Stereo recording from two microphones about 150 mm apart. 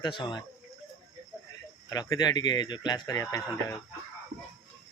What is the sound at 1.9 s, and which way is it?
Speech, 25° left (ahead or behind).